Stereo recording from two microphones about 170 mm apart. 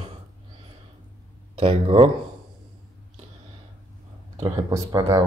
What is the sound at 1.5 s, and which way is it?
Speech, 35° right (ahead or behind).